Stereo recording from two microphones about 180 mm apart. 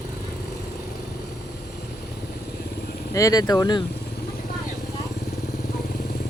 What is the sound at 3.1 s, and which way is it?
Speech, 20° left (ahead or behind).